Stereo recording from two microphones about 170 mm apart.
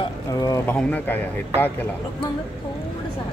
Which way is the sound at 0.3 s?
20° left (ahead or behind).